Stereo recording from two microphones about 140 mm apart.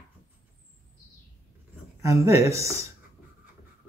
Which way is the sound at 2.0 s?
20° right (ahead or behind).